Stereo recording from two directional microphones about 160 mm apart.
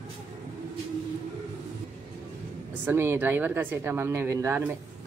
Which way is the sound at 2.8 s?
15° right (ahead or behind).